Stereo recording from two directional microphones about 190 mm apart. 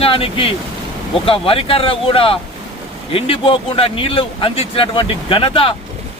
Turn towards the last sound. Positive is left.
turn(degrees=25)  # may be behind; listen again after turning